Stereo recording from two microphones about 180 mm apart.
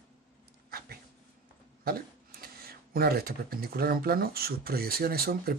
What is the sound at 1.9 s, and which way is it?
Speech, 55° right (ahead or behind).